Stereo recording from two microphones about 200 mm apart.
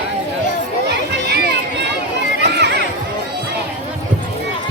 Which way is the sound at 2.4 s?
55° right (ahead or behind).